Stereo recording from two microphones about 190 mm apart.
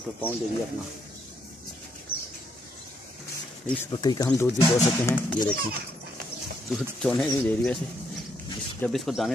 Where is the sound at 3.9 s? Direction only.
20° left (ahead or behind).